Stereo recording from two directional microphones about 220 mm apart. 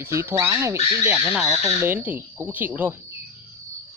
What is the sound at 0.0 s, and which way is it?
Speech, 10° right (ahead or behind).